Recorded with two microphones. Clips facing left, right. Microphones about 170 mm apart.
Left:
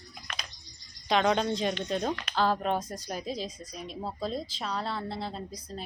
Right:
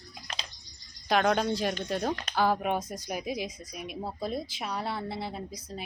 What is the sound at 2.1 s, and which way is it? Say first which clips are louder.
Speech: right 1 dB; 40° right (ahead or behind).